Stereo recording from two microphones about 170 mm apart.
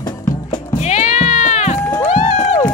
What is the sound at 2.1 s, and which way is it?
Crowd, 45° left (ahead or behind).